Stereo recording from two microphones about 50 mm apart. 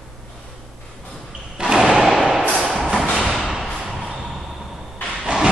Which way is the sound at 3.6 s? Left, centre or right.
Centre.